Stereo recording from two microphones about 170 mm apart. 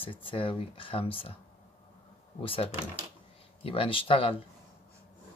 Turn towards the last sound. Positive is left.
turn(degrees=30)  # may be behind; listen again after turning